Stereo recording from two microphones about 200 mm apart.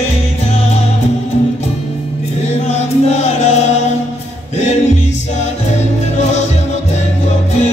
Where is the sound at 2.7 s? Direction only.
35° left (ahead or behind).